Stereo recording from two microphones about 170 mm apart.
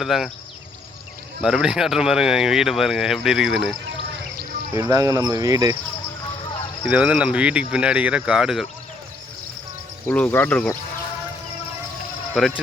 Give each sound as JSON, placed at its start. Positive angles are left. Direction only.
{"t": 0.0, "sound": "speech", "side_deg": 0}
{"t": 1.4, "sound": "speech", "side_deg": -5}
{"t": 4.8, "sound": "speech", "side_deg": -20}
{"t": 6.8, "sound": "cricket", "side_deg": -5}
{"t": 7.7, "sound": "speech", "side_deg": -5}
{"t": 10.1, "sound": "speech", "side_deg": 10}
{"t": 12.3, "sound": "speech", "side_deg": 0}